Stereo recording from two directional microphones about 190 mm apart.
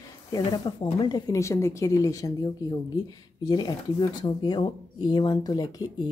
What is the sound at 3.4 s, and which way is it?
Speech, 20° left (ahead or behind).